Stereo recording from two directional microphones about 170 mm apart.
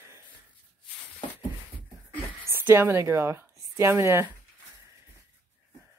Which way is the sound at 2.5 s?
15° right (ahead or behind).